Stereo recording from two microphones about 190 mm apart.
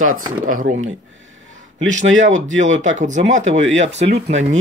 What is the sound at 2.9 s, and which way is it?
Speech, 40° right (ahead or behind).